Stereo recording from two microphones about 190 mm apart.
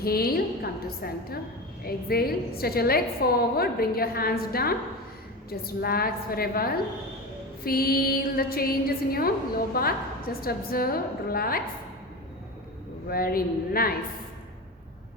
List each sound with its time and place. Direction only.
0.0 s a woman's voice: 55° left (ahead or behind)
13.1 s a woman's voice: 50° left (ahead or behind)